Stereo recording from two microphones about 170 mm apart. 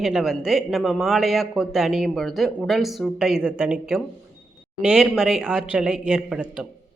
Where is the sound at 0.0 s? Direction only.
Centre (ahead or behind).